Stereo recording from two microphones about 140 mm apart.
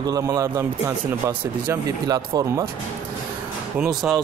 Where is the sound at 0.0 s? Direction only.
25° right (ahead or behind).